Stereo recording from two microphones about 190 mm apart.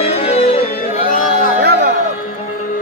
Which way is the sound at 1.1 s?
45° left (ahead or behind).